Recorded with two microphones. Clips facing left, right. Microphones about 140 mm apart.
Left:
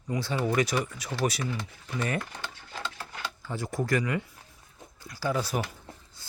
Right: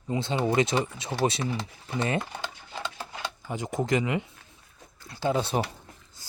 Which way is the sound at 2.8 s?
20° right (ahead or behind).